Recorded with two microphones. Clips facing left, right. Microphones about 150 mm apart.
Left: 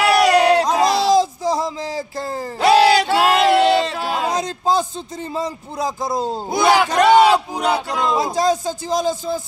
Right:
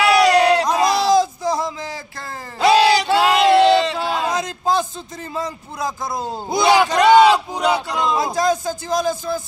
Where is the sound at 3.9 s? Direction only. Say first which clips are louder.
Even; 10° left (ahead or behind).